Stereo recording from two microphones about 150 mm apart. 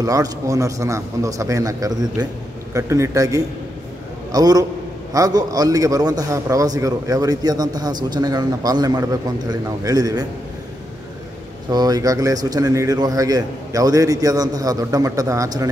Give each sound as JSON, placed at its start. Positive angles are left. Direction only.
{"t": 0.0, "sound": "a man's voice", "side_deg": -25}
{"t": 11.7, "sound": "a man's voice", "side_deg": -25}